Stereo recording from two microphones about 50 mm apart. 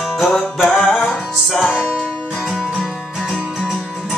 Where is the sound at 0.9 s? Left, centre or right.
Centre.